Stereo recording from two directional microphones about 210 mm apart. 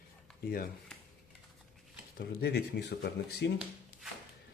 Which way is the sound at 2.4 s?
50° left (ahead or behind).